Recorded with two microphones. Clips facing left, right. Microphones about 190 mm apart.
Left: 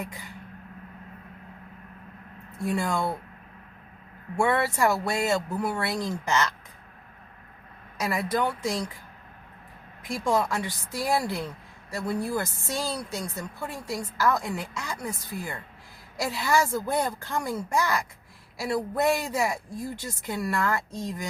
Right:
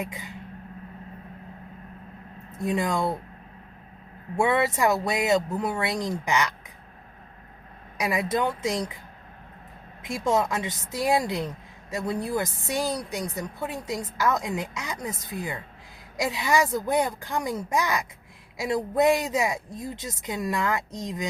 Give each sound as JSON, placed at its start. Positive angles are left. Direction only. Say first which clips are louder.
{"t": 0.0, "sound": "speech", "louder": "right 3 dB", "side_deg": -20}
{"t": 2.6, "sound": "speech", "louder": "right 2 dB", "side_deg": -20}
{"t": 4.4, "sound": "speech", "louder": "right 1 dB", "side_deg": -20}
{"t": 7.9, "sound": "speech", "louder": "right 1 dB", "side_deg": -15}
{"t": 10.0, "sound": "speech", "louder": "right 1 dB", "side_deg": -20}